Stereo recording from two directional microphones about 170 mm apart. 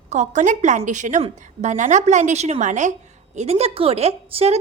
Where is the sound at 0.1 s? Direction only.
45° right (ahead or behind).